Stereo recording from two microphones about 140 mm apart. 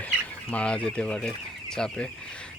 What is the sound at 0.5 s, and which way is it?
Speech, 10° left (ahead or behind).